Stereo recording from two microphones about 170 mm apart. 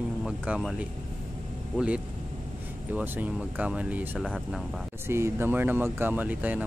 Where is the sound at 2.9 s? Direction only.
10° right (ahead or behind).